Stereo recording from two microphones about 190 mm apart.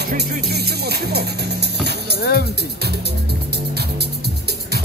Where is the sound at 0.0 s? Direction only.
60° right (ahead or behind).